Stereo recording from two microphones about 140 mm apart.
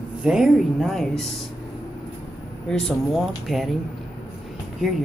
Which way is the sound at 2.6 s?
5° left (ahead or behind).